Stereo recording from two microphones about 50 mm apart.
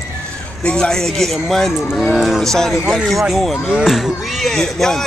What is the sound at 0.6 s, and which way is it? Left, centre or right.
Speech, centre.